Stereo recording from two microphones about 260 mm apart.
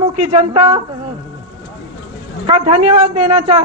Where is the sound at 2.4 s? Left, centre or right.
Right.